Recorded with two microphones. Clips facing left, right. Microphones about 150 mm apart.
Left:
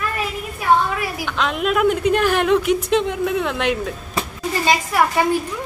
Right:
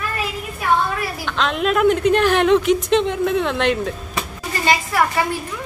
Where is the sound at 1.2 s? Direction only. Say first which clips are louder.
Right 2 dB; 10° left (ahead or behind).